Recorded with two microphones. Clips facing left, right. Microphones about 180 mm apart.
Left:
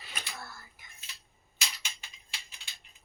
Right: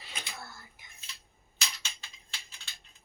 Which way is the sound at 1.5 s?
15° left (ahead or behind).